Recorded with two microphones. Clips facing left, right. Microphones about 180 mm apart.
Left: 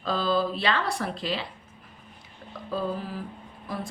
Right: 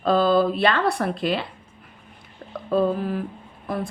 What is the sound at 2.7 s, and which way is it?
Speech, 60° right (ahead or behind).